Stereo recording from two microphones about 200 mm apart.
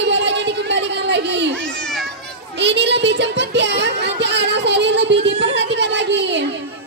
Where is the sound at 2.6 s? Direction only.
60° right (ahead or behind).